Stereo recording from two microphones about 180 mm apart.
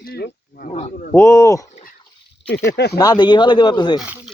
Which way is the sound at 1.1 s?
15° left (ahead or behind).